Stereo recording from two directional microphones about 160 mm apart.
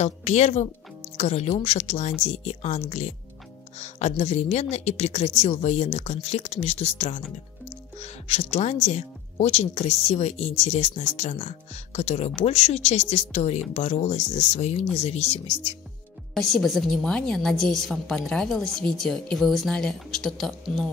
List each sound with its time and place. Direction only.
0.0 s speech: 45° left (ahead or behind)
16.3 s a woman's voice: centre (ahead or behind)